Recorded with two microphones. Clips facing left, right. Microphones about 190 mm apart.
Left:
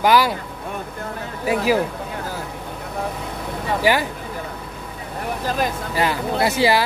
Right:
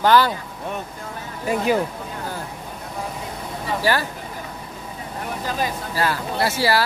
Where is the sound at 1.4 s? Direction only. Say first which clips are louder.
Left 1 dB; 5° left (ahead or behind).